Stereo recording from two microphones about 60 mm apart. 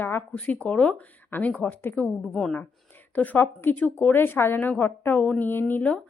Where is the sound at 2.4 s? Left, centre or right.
Centre.